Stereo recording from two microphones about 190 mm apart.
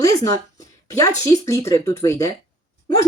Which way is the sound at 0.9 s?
15° left (ahead or behind).